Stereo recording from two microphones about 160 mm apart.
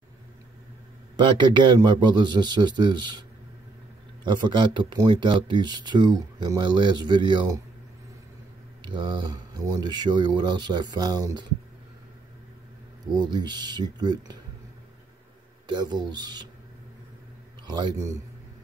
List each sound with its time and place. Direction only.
1.1 s speech: 30° right (ahead or behind)
8.8 s speech: 30° right (ahead or behind)
13.1 s speech: 25° right (ahead or behind)
15.6 s speech: 25° right (ahead or behind)
17.6 s speech: 25° right (ahead or behind)